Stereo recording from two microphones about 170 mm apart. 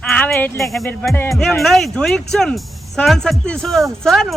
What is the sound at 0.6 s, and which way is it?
Speech, centre (ahead or behind).